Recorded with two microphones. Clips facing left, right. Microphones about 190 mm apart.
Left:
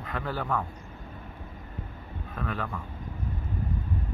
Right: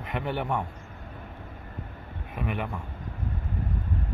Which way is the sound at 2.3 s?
15° right (ahead or behind).